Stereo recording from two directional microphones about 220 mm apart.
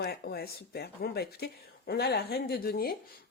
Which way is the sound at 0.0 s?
45° left (ahead or behind).